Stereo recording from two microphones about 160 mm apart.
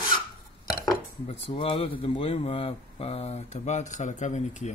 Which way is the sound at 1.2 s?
40° left (ahead or behind).